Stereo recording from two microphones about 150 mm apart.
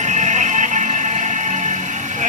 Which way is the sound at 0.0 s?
55° right (ahead or behind).